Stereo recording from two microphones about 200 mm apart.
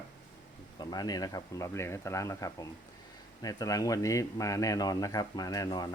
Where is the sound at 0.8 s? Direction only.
20° left (ahead or behind).